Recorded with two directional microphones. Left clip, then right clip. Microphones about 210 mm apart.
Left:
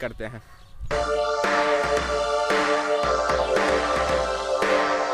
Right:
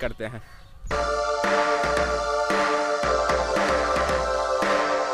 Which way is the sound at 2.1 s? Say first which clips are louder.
Left 1 dB; 15° left (ahead or behind).